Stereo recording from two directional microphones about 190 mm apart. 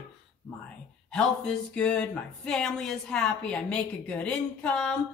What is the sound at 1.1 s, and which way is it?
Speech, 5° left (ahead or behind).